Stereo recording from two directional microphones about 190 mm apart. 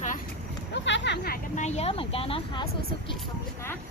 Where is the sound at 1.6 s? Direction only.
35° left (ahead or behind).